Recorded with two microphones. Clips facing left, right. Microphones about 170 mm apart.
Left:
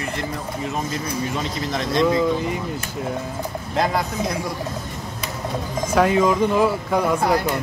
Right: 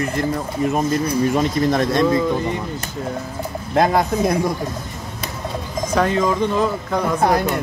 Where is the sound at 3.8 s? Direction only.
50° right (ahead or behind).